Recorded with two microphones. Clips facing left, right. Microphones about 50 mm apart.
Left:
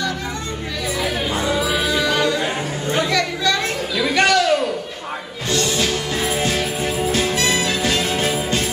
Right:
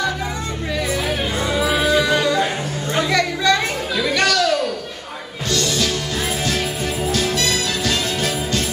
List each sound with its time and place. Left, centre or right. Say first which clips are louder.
1.5 s music: right 4 dB; centre
2.4 s chatter: even; centre
4.1 s music: left 2 dB; left